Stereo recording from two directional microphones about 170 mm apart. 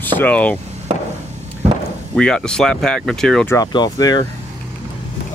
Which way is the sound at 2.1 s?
5° left (ahead or behind).